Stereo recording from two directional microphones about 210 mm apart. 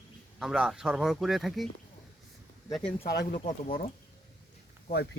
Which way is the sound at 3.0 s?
50° left (ahead or behind).